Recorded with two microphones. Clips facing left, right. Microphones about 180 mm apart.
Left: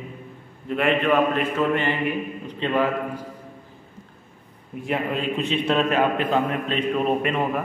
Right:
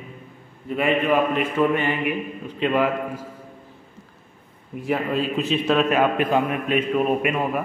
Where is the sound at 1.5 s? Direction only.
15° right (ahead or behind).